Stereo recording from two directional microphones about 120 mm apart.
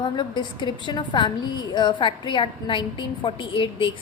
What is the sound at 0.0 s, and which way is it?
A woman's voice, 40° left (ahead or behind).